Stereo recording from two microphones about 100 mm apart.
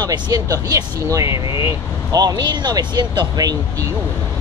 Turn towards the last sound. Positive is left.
turn(degrees=-40)  # may be behind; listen again after turning